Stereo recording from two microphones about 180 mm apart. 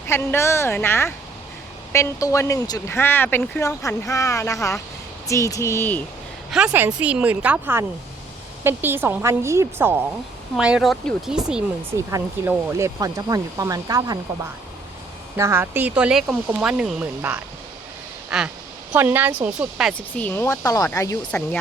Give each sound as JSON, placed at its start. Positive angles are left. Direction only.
{"t": 0.1, "sound": "speech", "side_deg": 15}
{"t": 6.5, "sound": "speech", "side_deg": -5}
{"t": 11.9, "sound": "speech", "side_deg": -15}
{"t": 15.4, "sound": "speech", "side_deg": -15}
{"t": 18.3, "sound": "a sound", "side_deg": -5}
{"t": 18.9, "sound": "speech", "side_deg": -10}
{"t": 19.9, "sound": "speech", "side_deg": 5}